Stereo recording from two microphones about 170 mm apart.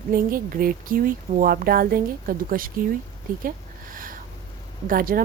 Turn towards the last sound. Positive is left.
turn(degrees=-55)  # may be behind; listen again after turning